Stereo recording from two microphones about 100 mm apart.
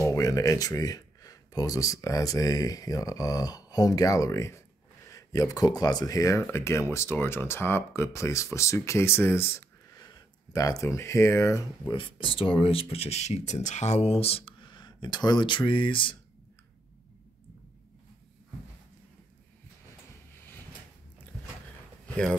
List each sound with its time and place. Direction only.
0.1 s speech: 35° left (ahead or behind)
11.9 s speech: 60° left (ahead or behind)
22.0 s a sound: 10° left (ahead or behind)